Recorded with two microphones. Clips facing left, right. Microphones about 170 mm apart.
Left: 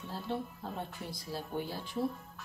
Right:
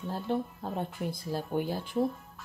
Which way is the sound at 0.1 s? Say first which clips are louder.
Right 6 dB; 50° right (ahead or behind).